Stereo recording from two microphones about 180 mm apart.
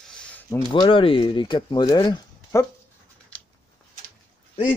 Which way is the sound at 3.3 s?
5° left (ahead or behind).